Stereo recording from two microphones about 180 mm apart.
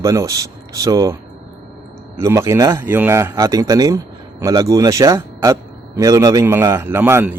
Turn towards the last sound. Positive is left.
turn(degrees=-10)  # may be behind; listen again after turning